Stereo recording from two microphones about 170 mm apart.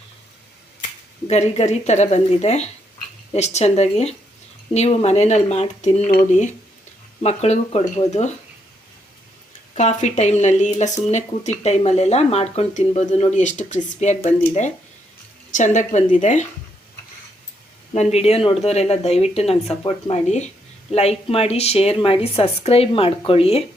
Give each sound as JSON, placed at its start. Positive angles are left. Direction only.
{"t": 1.3, "sound": "speech", "side_deg": 40}
{"t": 7.2, "sound": "speech", "side_deg": 40}
{"t": 9.7, "sound": "speech", "side_deg": 45}
{"t": 15.5, "sound": "speech", "side_deg": 45}
{"t": 17.9, "sound": "speech", "side_deg": 40}